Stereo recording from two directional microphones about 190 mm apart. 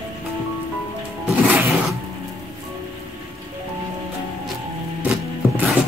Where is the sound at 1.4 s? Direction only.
10° right (ahead or behind).